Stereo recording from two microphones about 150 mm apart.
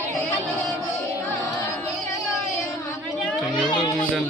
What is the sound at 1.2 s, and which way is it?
Music, 15° left (ahead or behind).